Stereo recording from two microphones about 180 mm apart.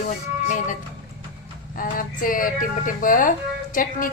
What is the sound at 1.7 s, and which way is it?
A woman's voice, 50° left (ahead or behind).